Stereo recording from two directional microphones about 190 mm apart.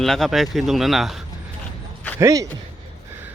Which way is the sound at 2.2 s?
15° right (ahead or behind).